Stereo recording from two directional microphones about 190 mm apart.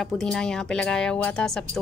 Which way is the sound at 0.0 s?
Centre (ahead or behind).